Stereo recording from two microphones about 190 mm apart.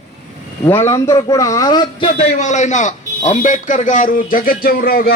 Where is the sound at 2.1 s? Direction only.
35° left (ahead or behind).